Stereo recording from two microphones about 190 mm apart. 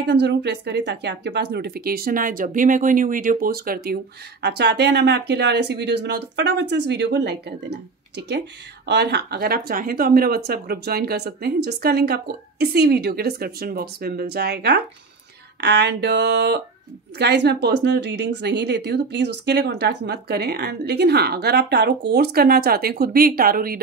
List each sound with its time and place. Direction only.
0.0 s speech: 65° right (ahead or behind)